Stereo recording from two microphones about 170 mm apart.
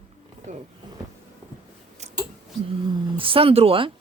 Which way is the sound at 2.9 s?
30° right (ahead or behind).